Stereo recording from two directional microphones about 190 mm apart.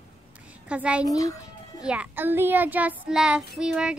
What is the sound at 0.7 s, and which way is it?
Child singing, 5° right (ahead or behind).